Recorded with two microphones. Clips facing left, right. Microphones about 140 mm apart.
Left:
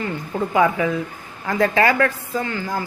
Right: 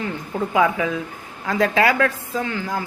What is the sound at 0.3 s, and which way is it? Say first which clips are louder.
A woman's voice: left 1 dB; 5° right (ahead or behind).